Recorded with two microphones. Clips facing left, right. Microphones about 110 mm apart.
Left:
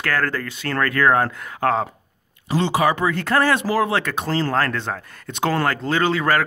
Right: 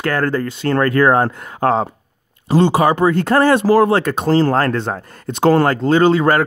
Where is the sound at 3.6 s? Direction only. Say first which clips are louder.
Right 8 dB; 45° right (ahead or behind); by 6.4 s 25° right (ahead or behind).